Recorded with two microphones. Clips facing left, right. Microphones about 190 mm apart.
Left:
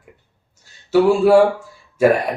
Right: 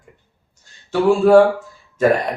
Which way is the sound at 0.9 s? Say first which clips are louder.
Even; 5° left (ahead or behind).